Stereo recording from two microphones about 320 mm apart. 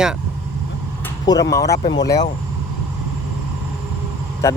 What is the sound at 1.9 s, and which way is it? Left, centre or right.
Speech, left.